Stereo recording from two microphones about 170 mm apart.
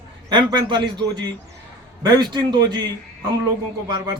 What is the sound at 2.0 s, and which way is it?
Speech, 25° right (ahead or behind).